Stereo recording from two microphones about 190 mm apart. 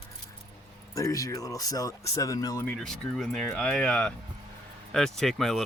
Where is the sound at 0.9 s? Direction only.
15° left (ahead or behind).